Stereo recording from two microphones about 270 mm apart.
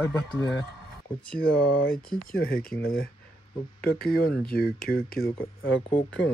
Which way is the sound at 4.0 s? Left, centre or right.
Left.